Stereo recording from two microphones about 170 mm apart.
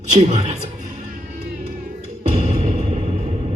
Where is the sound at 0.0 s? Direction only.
45° right (ahead or behind).